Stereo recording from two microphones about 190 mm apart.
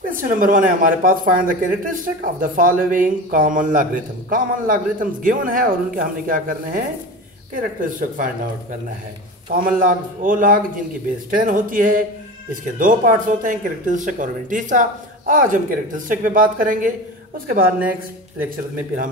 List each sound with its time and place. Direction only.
0.0 s speech: 45° right (ahead or behind)
9.5 s speech: 45° right (ahead or behind)